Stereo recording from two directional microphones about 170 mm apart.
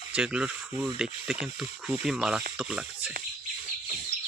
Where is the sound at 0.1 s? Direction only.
5° right (ahead or behind).